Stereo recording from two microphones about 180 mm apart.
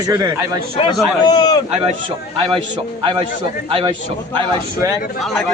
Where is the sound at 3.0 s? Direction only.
30° right (ahead or behind).